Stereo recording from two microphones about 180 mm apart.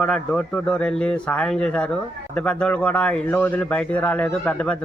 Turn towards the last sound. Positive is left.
turn(degrees=5)  # may be behind; listen again after turning